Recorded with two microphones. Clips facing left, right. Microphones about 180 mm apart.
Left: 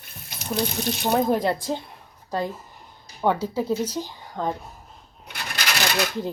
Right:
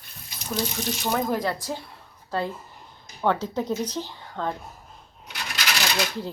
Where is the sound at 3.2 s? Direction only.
10° left (ahead or behind).